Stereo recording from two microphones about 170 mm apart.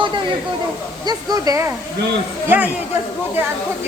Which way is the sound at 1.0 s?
20° right (ahead or behind).